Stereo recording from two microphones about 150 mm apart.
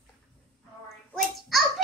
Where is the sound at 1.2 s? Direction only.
Centre (ahead or behind).